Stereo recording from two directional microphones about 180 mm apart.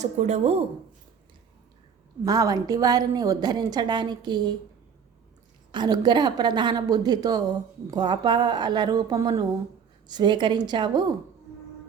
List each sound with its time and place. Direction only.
0.0 s speech: 40° right (ahead or behind)
2.2 s a woman's voice: 20° right (ahead or behind)
5.7 s a woman's voice: 25° right (ahead or behind)